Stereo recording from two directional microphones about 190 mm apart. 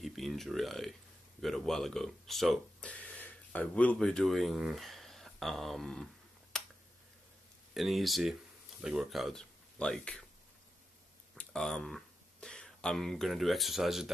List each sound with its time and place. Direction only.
0.0 s speech: centre (ahead or behind)
6.5 s a sound: 5° left (ahead or behind)
7.7 s speech: centre (ahead or behind)
11.3 s speech: centre (ahead or behind)